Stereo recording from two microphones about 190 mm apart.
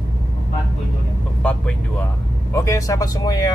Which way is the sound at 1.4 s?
5° left (ahead or behind).